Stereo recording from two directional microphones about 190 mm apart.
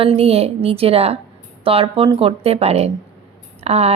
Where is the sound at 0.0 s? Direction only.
30° right (ahead or behind).